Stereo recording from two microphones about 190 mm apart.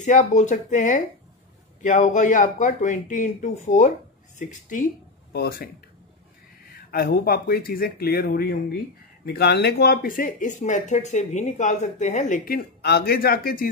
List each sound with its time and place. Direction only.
0.0 s speech: 40° left (ahead or behind)
5.3 s speech: 55° left (ahead or behind)
6.9 s speech: 50° left (ahead or behind)